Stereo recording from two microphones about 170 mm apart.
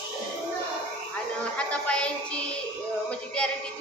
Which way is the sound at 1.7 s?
5° left (ahead or behind).